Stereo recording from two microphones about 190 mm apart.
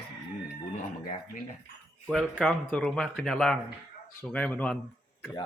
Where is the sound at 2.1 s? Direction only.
5° left (ahead or behind).